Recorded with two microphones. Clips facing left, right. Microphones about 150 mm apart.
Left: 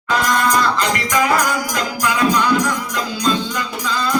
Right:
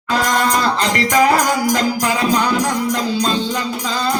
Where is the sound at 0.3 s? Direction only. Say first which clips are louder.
Even; 30° right (ahead or behind).